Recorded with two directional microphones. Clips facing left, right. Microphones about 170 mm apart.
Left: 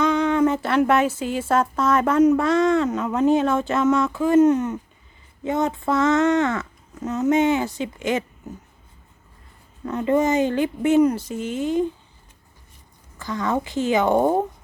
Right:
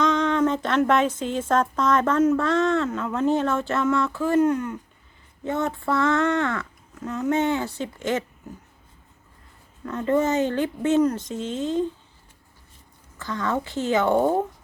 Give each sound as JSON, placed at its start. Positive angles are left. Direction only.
{"t": 0.0, "sound": "speech", "side_deg": 10}
{"t": 9.8, "sound": "speech", "side_deg": 15}
{"t": 13.1, "sound": "speech", "side_deg": 15}